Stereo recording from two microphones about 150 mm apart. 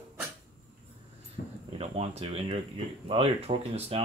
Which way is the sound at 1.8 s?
40° right (ahead or behind).